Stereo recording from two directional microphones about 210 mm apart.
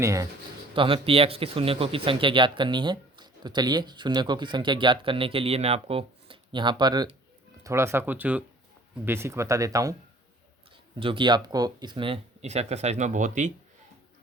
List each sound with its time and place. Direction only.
0.0 s speech: 15° right (ahead or behind)
0.8 s speech: 25° right (ahead or behind)
11.0 s speech: 25° right (ahead or behind)